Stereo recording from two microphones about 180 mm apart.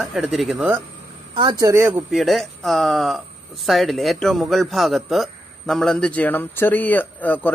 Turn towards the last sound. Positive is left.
turn(degrees=10)  # may be behind; listen again after turning